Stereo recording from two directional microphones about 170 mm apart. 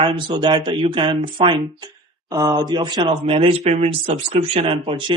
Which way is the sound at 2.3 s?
20° right (ahead or behind).